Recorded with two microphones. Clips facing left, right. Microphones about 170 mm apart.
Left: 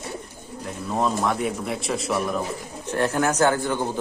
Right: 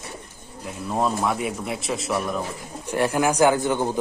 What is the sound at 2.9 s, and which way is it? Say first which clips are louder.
Speech: right 1 dB; 10° right (ahead or behind).